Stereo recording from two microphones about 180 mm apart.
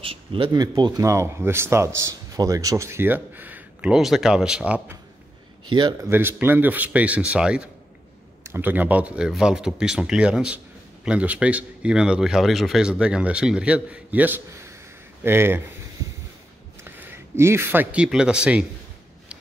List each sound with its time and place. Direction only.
0.0 s speech: 30° right (ahead or behind); by 4.9 s 10° right (ahead or behind)
5.7 s a man's voice: 25° right (ahead or behind)
6.0 s a man's voice: 10° right (ahead or behind)
16.8 s speech: 15° right (ahead or behind)